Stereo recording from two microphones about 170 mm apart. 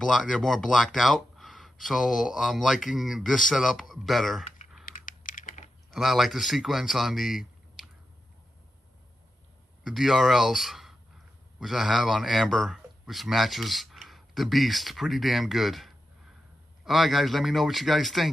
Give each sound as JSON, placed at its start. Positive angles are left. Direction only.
{"t": 0.0, "sound": "speech", "side_deg": 0}
{"t": 4.8, "sound": "typing", "side_deg": 50}
{"t": 5.9, "sound": "speech", "side_deg": 0}
{"t": 9.8, "sound": "speech", "side_deg": 0}